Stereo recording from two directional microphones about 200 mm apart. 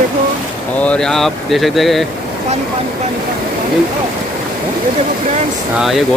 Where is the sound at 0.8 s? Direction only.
5° left (ahead or behind).